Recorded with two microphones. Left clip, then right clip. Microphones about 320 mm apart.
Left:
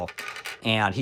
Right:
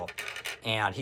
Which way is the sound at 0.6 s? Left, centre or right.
Centre.